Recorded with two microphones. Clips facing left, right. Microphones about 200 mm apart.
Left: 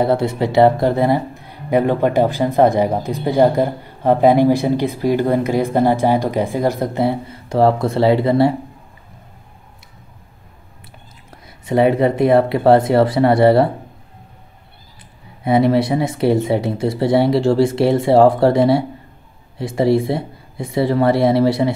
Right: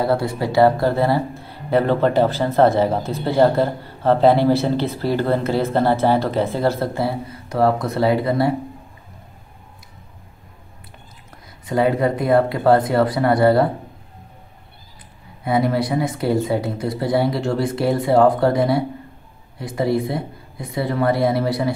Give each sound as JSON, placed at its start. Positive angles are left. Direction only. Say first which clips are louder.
{"t": 0.0, "sound": "speech", "louder": "left 3 dB", "side_deg": 20}
{"t": 11.6, "sound": "speech", "louder": "left 4 dB", "side_deg": 25}
{"t": 15.4, "sound": "speech", "louder": "left 5 dB", "side_deg": 25}